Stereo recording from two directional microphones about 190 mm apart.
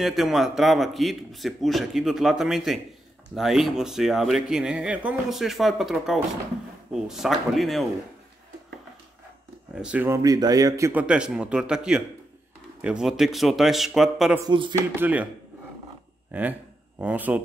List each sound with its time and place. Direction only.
0.0 s speech: centre (ahead or behind)
9.8 s speech: 5° right (ahead or behind)
14.5 s speech: 25° right (ahead or behind)
14.8 s speech: 10° right (ahead or behind)
16.3 s speech: 10° right (ahead or behind)